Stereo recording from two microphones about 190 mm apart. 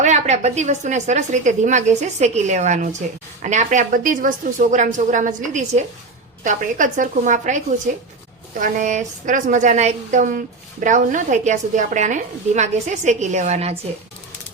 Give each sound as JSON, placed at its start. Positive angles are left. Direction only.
{"t": 0.0, "sound": "a woman's voice", "side_deg": -35}